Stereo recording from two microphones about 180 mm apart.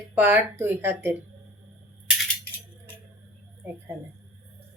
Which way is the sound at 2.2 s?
10° left (ahead or behind).